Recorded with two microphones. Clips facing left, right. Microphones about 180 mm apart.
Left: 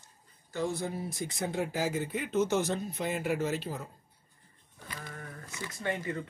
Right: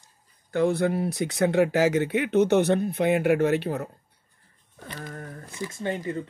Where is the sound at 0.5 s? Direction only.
65° right (ahead or behind).